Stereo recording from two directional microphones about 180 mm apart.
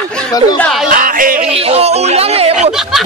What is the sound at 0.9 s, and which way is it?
Yodeling, 50° right (ahead or behind).